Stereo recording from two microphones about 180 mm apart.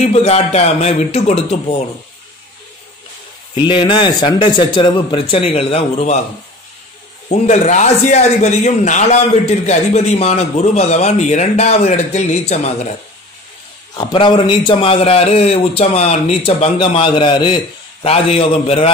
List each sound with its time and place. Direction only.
0.0 s a man's voice: 35° left (ahead or behind)
3.6 s speech: 25° left (ahead or behind)
7.2 s a man's voice: 40° left (ahead or behind)
13.9 s a man's voice: 25° left (ahead or behind)